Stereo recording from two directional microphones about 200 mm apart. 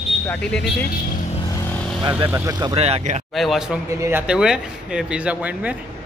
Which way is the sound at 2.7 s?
30° right (ahead or behind).